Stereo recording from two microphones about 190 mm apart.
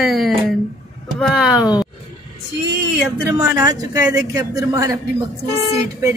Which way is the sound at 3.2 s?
15° right (ahead or behind).